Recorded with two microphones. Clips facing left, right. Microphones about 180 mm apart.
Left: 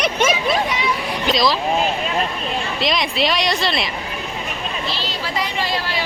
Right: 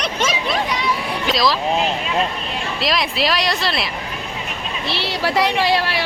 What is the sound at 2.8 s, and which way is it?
Speech, centre (ahead or behind).